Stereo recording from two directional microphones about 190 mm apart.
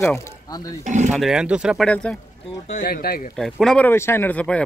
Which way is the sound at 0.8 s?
40° right (ahead or behind).